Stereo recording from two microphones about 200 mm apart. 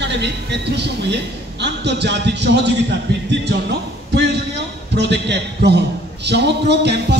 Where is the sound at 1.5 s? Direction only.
60° right (ahead or behind).